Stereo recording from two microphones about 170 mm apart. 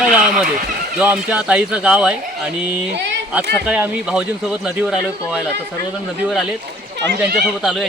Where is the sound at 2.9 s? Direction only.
90° right.